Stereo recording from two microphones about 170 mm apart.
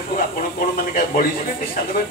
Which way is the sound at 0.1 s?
55° left (ahead or behind).